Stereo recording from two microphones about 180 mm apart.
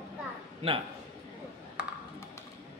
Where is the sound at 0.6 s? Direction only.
35° right (ahead or behind).